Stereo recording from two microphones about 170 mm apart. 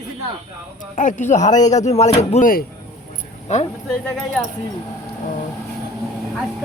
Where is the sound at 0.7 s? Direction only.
50° left (ahead or behind).